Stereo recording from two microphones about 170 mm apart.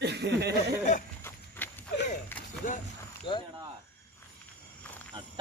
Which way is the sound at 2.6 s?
50° left (ahead or behind).